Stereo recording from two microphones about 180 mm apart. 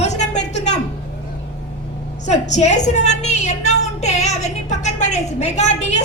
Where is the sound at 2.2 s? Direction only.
40° left (ahead or behind).